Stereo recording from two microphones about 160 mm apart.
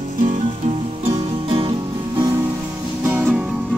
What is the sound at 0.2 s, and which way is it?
Music, 45° right (ahead or behind).